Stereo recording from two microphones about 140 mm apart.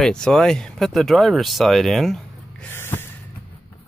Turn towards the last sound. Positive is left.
turn(degrees=15)  # may be behind; listen again after turning